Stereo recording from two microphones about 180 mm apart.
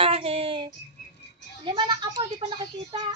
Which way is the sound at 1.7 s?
25° right (ahead or behind).